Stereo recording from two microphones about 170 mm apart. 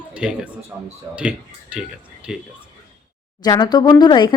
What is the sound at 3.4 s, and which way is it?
Speech, 25° left (ahead or behind).